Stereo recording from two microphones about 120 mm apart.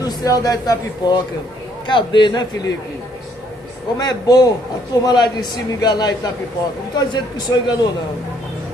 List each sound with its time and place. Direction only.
0.0 s a man's voice: 30° left (ahead or behind)
4.0 s a man's voice: 35° left (ahead or behind)